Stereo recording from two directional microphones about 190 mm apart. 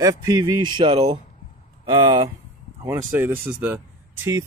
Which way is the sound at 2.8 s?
10° right (ahead or behind).